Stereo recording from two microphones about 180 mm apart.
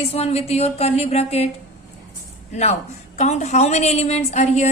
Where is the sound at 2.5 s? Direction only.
40° left (ahead or behind).